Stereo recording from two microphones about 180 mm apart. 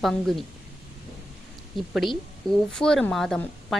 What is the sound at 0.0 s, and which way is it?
Speech, centre (ahead or behind).